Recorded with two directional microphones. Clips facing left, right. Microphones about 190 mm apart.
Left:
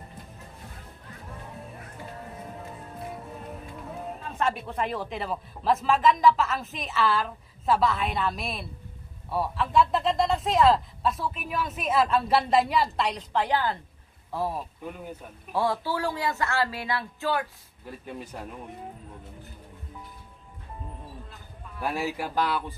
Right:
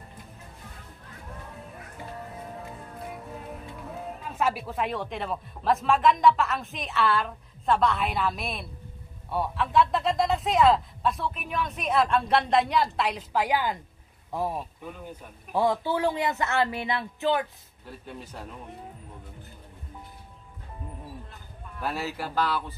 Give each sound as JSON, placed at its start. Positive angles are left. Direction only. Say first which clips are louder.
{"t": 4.2, "sound": "speech", "louder": "right 1 dB", "side_deg": -5}
{"t": 18.0, "sound": "speech", "louder": "left 3 dB", "side_deg": 10}
{"t": 21.7, "sound": "speech", "louder": "left 2 dB", "side_deg": 10}